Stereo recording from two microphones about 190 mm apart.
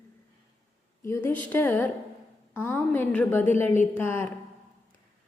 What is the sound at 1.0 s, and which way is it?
A woman's voice, 10° left (ahead or behind).